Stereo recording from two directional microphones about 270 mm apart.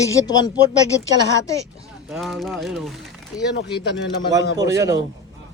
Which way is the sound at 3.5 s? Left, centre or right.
Left.